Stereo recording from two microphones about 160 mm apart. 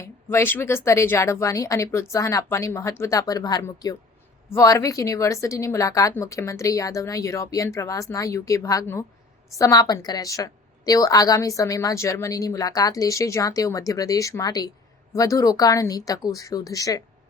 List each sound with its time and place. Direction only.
0.0 s a woman's voice: 15° left (ahead or behind)